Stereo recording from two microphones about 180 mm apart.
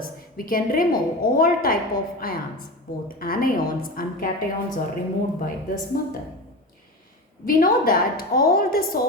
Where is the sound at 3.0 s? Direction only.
55° left (ahead or behind).